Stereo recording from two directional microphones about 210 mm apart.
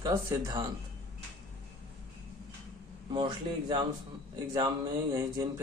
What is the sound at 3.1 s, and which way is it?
Speech, 20° right (ahead or behind).